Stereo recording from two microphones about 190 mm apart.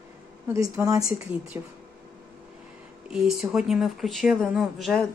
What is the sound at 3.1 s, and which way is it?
Speech, centre (ahead or behind).